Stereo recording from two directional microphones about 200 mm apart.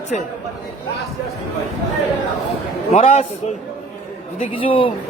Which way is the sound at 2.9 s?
30° left (ahead or behind).